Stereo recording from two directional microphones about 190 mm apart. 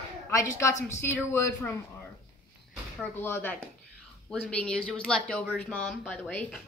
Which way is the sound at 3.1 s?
10° left (ahead or behind).